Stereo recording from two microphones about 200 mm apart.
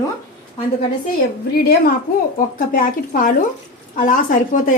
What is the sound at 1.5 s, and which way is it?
A woman's voice, 50° left (ahead or behind).